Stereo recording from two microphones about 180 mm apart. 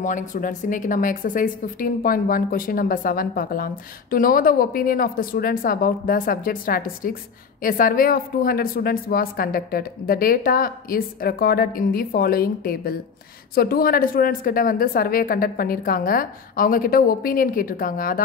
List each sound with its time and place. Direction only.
0.0 s a woman's voice: 45° left (ahead or behind)